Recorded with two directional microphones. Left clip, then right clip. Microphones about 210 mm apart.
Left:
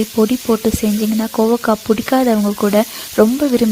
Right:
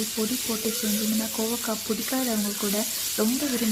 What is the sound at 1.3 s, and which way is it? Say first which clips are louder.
Speech: left 14 dB; 40° left (ahead or behind).